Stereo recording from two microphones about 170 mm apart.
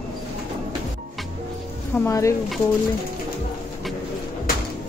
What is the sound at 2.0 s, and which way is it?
Speech, 20° left (ahead or behind).